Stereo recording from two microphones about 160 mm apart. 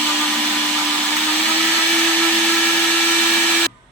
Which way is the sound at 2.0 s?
5° left (ahead or behind).